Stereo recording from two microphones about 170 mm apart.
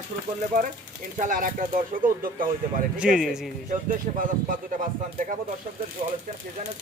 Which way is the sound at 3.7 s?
50° right (ahead or behind).